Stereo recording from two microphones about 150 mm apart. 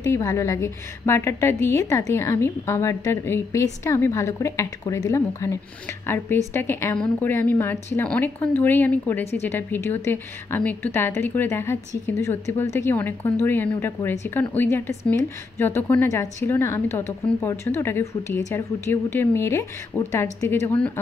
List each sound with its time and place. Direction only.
0.0 s a woman's voice: 20° left (ahead or behind)